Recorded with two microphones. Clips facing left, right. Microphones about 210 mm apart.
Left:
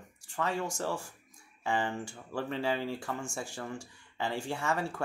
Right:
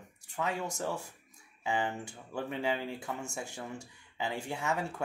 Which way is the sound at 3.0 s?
20° right (ahead or behind).